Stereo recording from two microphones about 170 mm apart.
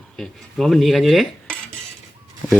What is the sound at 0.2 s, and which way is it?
Speech, centre (ahead or behind).